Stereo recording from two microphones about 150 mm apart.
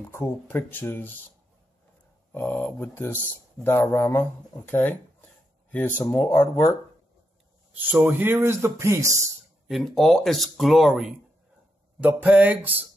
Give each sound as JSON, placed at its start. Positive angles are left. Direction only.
{"t": 0.1, "sound": "speech", "side_deg": 15}
{"t": 2.3, "sound": "speech", "side_deg": 10}
{"t": 5.9, "sound": "speech", "side_deg": 10}
{"t": 7.7, "sound": "a man's voice", "side_deg": -10}
{"t": 9.7, "sound": "speech", "side_deg": 0}
{"t": 12.0, "sound": "a sound", "side_deg": -10}